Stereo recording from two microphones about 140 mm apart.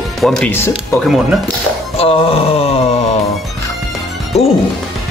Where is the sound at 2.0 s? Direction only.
45° left (ahead or behind).